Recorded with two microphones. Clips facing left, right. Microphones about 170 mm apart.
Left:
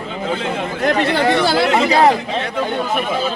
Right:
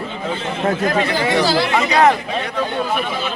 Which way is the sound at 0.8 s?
70° left (ahead or behind).